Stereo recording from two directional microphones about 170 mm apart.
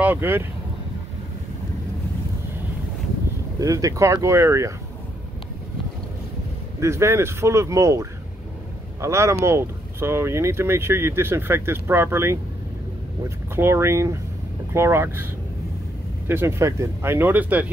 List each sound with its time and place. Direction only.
0.0 s speech: 10° right (ahead or behind)
3.5 s speech: 20° right (ahead or behind)
6.8 s speech: 15° right (ahead or behind)
13.6 s speech: 15° right (ahead or behind)
16.3 s speech: 15° right (ahead or behind)